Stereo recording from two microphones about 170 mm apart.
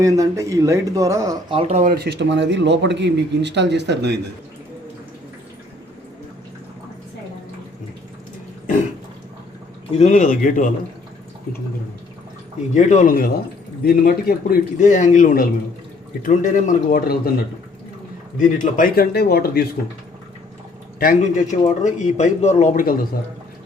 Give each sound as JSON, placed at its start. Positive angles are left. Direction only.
{"t": 0.0, "sound": "speech", "side_deg": -20}
{"t": 1.5, "sound": "speech", "side_deg": -40}
{"t": 2.0, "sound": "speech", "side_deg": -90}
{"t": 10.0, "sound": "speech", "side_deg": 50}
{"t": 12.7, "sound": "speech", "side_deg": 45}
{"t": 18.3, "sound": "a man's voice", "side_deg": 50}
{"t": 21.0, "sound": "speech", "side_deg": 50}